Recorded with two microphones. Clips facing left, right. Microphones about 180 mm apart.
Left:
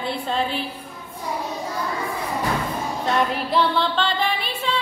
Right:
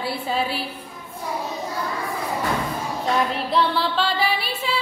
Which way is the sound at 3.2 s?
Centre (ahead or behind).